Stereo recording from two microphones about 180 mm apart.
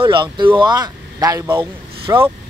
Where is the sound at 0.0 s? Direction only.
25° right (ahead or behind).